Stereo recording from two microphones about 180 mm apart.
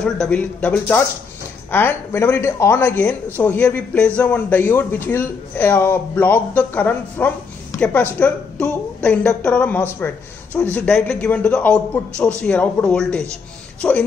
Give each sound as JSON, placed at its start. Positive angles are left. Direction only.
{"t": 0.0, "sound": "a man's voice", "side_deg": 5}